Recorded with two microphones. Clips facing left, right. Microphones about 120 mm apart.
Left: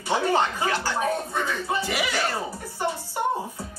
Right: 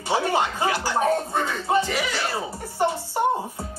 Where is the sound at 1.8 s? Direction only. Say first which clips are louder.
Right 2 dB; 10° left (ahead or behind).